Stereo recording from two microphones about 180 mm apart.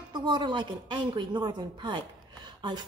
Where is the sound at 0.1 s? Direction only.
25° right (ahead or behind).